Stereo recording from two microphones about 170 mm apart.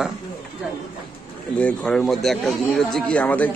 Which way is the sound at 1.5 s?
5° left (ahead or behind).